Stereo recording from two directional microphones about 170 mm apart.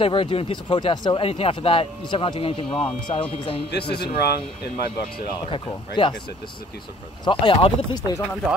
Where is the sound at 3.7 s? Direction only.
75° left (ahead or behind).